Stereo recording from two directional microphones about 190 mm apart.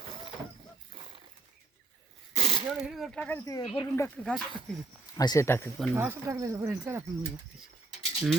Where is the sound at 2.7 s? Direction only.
5° right (ahead or behind); by 4.1 s 15° left (ahead or behind).